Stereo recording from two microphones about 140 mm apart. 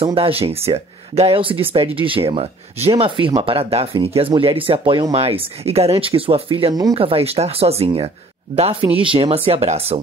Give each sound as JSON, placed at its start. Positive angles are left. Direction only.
{"t": 0.0, "sound": "speech", "side_deg": -40}
{"t": 6.7, "sound": "speech", "side_deg": -25}
{"t": 7.0, "sound": "speech", "side_deg": -40}